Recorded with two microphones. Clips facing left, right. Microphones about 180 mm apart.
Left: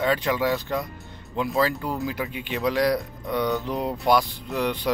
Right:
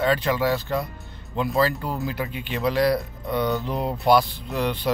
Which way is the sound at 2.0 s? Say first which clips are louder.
Even; 15° left (ahead or behind).